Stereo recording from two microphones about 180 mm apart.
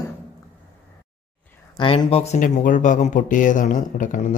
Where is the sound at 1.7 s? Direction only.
30° left (ahead or behind).